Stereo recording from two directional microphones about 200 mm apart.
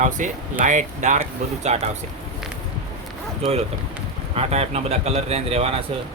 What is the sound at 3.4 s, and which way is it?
Speech, 30° right (ahead or behind).